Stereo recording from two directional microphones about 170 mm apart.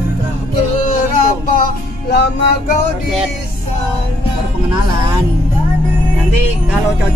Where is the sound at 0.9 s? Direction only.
50° left (ahead or behind).